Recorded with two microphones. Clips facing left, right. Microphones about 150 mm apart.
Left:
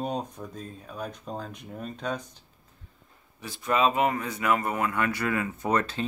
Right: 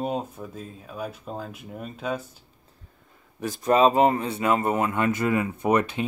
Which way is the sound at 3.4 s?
40° right (ahead or behind).